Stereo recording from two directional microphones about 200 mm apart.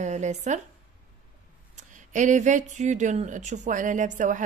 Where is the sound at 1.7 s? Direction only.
40° right (ahead or behind).